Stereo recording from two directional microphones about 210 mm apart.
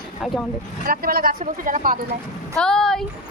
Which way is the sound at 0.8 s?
45° right (ahead or behind).